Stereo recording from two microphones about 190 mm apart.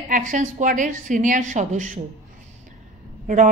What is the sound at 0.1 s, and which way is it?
A man's voice, 40° right (ahead or behind).